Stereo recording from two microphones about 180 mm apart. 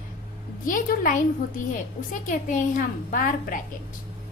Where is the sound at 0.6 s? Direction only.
50° left (ahead or behind).